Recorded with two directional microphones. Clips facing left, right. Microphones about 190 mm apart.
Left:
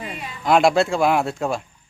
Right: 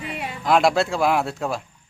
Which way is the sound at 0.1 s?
65° right (ahead or behind).